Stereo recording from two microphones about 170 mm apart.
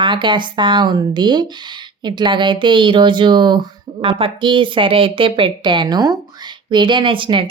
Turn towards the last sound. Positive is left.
turn(degrees=-30)  # may be behind; listen again after turning